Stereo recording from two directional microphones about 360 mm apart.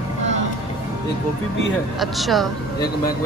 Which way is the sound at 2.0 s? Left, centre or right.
Centre.